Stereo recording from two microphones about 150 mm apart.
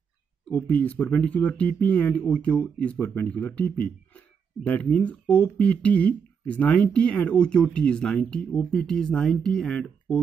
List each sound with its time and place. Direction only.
0.5 s speech: 10° left (ahead or behind)